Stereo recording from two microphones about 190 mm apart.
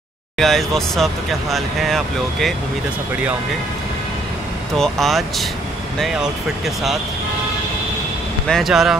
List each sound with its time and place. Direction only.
0.4 s speech: centre (ahead or behind)
4.7 s speech: centre (ahead or behind)
8.5 s speech: centre (ahead or behind)